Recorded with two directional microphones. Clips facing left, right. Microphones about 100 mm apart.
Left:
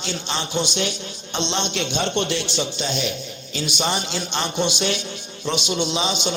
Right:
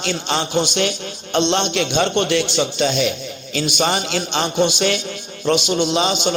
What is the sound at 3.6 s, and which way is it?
A man's voice, 70° right (ahead or behind).